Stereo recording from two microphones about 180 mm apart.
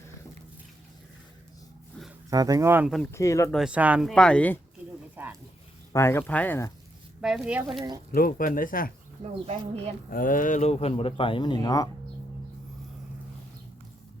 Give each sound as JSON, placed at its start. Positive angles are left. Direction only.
{"t": 2.3, "sound": "speech", "side_deg": -20}
{"t": 3.1, "sound": "speech", "side_deg": 15}
{"t": 3.5, "sound": "speech", "side_deg": -5}
{"t": 4.1, "sound": "speech", "side_deg": 5}
{"t": 5.1, "sound": "a sound", "side_deg": -10}
{"t": 5.9, "sound": "speech", "side_deg": 15}
{"t": 7.2, "sound": "speech", "side_deg": -5}
{"t": 8.1, "sound": "speech", "side_deg": 50}
{"t": 9.5, "sound": "speech", "side_deg": -35}
{"t": 10.1, "sound": "speech", "side_deg": 50}